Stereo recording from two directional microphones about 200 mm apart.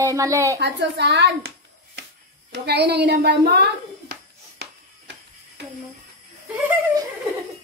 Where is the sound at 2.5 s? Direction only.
55° right (ahead or behind).